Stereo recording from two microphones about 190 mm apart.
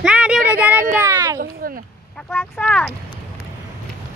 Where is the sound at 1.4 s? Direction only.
50° right (ahead or behind).